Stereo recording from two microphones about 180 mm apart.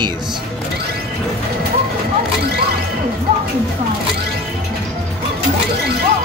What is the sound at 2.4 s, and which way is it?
Music, 60° right (ahead or behind).